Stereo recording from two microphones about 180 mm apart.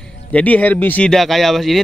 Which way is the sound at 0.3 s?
5° left (ahead or behind).